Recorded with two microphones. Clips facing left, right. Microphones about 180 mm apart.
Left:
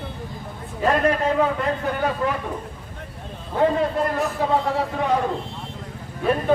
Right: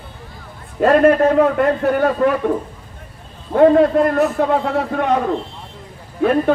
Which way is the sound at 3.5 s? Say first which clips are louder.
Right 9 dB; 65° right (ahead or behind).